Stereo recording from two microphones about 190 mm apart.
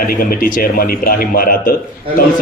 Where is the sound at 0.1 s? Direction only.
45° left (ahead or behind).